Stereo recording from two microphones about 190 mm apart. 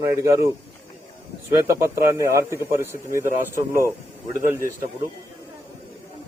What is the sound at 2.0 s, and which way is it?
Speech, 15° right (ahead or behind).